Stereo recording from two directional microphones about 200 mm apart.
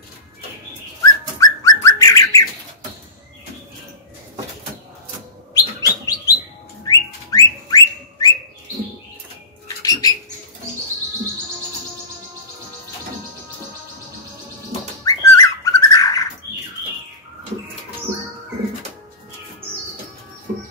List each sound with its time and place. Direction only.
1.4 s bird: 15° left (ahead or behind)
5.5 s bird: 15° left (ahead or behind)
6.9 s whistling: 20° left (ahead or behind)
10.0 s rodents: 20° left (ahead or behind)
15.0 s bird: 15° left (ahead or behind)